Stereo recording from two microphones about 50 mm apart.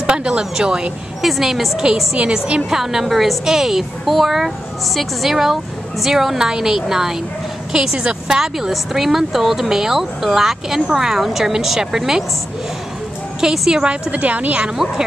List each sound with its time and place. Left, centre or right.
0.0 s a woman's voice: centre
1.2 s a woman's voice: centre
13.4 s a woman's voice: centre
14.1 s a woman's voice: right